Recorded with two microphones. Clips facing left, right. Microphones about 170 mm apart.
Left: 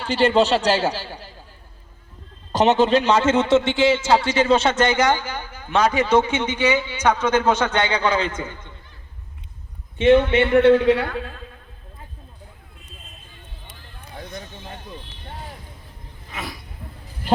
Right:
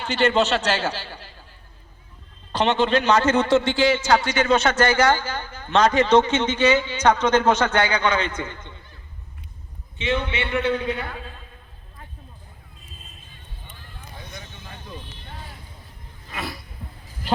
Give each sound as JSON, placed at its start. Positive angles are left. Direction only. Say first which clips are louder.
{"t": 0.0, "sound": "a man's voice", "louder": "left 3 dB", "side_deg": 35}
{"t": 2.5, "sound": "a man's voice", "louder": "left 4 dB", "side_deg": 40}
{"t": 10.0, "sound": "a man's voice", "louder": "left 10 dB", "side_deg": 50}
{"t": 10.7, "sound": "a man's voice", "louder": "left 10 dB", "side_deg": 85}
{"t": 14.2, "sound": "a sound", "louder": "left 7 dB", "side_deg": 50}
{"t": 16.3, "sound": "a sound", "louder": "right 1 dB", "side_deg": 0}